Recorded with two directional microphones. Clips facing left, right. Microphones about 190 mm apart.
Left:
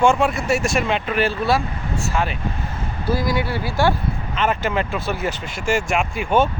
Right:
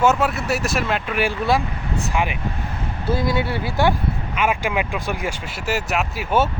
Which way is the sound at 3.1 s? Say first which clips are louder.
Even; 25° right (ahead or behind).